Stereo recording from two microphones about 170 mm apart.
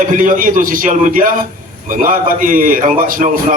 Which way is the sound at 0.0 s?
50° right (ahead or behind).